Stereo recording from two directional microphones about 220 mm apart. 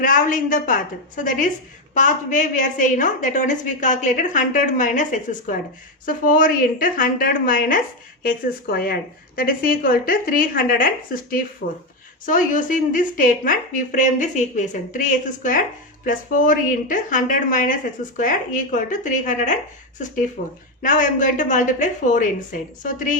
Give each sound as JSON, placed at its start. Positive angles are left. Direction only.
{"t": 0.0, "sound": "a woman's voice", "side_deg": 35}